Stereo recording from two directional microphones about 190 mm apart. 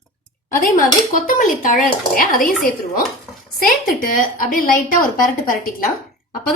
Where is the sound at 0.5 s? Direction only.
45° left (ahead or behind).